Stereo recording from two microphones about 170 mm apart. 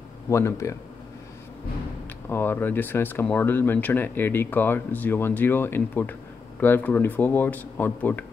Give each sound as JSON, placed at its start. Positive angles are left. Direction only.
{"t": 0.3, "sound": "speech", "side_deg": 15}
{"t": 2.2, "sound": "speech", "side_deg": 15}